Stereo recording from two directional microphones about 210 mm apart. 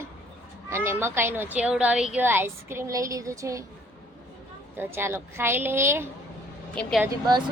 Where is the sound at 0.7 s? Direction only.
10° right (ahead or behind).